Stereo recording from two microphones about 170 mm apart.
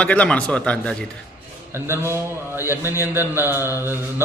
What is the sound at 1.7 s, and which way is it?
Speech, 15° right (ahead or behind).